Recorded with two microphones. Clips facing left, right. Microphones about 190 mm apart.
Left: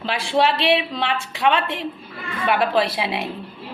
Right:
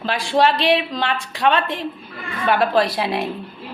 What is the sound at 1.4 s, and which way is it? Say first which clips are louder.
A woman's voice: right 1 dB; 40° right (ahead or behind).